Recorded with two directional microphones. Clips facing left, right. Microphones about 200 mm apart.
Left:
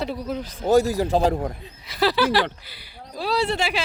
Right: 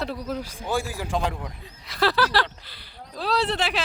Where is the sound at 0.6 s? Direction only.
40° left (ahead or behind).